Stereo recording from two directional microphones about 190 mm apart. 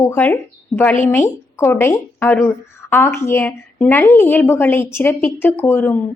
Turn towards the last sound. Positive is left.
turn(degrees=10)  # may be behind; listen again after turning